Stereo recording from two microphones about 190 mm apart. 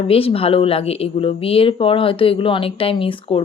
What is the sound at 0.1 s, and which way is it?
Speech, 30° left (ahead or behind).